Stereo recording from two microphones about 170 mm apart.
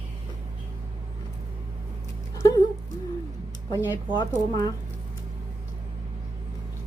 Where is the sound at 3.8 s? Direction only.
10° right (ahead or behind).